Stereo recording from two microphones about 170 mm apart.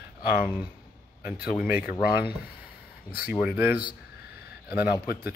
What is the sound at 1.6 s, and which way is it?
Speech, 10° right (ahead or behind).